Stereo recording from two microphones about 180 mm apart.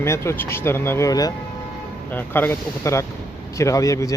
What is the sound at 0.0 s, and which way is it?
Speech, 15° left (ahead or behind).